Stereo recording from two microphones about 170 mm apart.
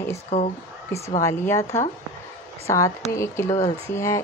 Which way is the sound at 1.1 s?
15° left (ahead or behind).